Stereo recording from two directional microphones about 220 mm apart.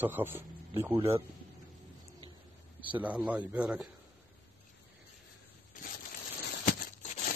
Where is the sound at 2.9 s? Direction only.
5° right (ahead or behind).